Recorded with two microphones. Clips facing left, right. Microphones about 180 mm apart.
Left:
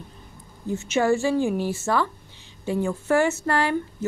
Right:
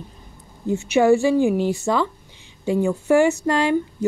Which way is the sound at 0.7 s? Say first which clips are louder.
Right 6 dB; 15° right (ahead or behind).